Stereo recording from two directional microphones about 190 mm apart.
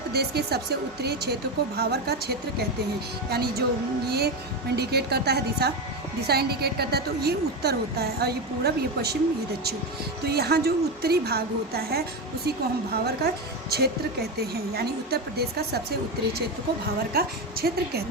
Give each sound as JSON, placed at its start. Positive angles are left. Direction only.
{"t": 0.1, "sound": "a woman's voice", "side_deg": -55}
{"t": 4.8, "sound": "a woman's voice", "side_deg": -60}
{"t": 10.2, "sound": "a woman's voice", "side_deg": -55}
{"t": 17.2, "sound": "a woman's voice", "side_deg": -55}